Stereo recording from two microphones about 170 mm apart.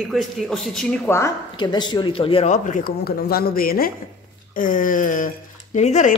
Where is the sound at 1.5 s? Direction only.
25° left (ahead or behind).